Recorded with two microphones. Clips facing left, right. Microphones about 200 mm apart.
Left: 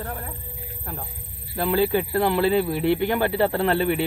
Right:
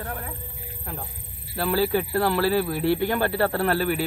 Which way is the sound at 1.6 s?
20° left (ahead or behind).